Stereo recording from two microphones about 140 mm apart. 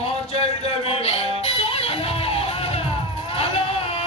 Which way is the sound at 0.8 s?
45° left (ahead or behind).